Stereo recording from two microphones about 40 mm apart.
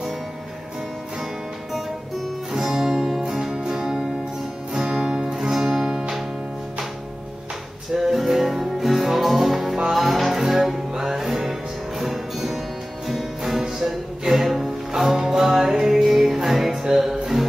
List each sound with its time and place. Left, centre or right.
2.5 s music: centre
5.5 s music: centre
5.9 s music: right
7.9 s music: centre